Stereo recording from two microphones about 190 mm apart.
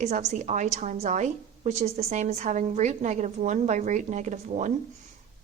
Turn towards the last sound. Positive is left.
turn(degrees=-40)  # may be behind; listen again after turning